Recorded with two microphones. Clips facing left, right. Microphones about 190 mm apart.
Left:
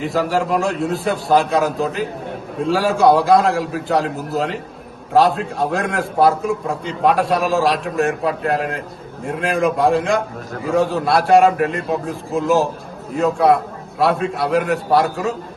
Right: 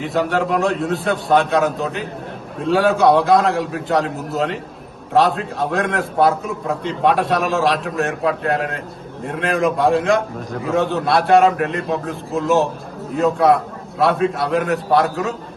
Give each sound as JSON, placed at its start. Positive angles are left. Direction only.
{"t": 0.0, "sound": "a man's voice", "side_deg": 0}